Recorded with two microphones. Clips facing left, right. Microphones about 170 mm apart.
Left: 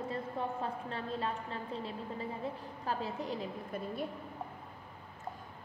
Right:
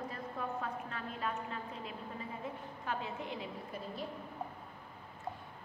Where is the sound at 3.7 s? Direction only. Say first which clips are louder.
Left 6 dB; 55° left (ahead or behind).